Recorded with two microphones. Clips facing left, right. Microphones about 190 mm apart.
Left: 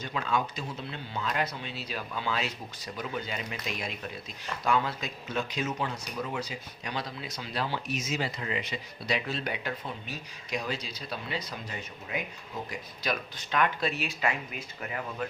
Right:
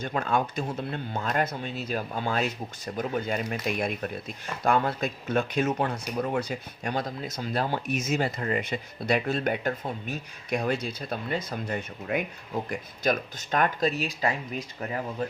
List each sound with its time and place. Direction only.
0.0 s speech: 50° right (ahead or behind); by 15.3 s 35° right (ahead or behind)